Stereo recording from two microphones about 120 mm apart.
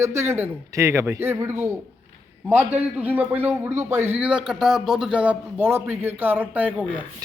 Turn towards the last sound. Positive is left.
turn(degrees=-15)  # may be behind; listen again after turning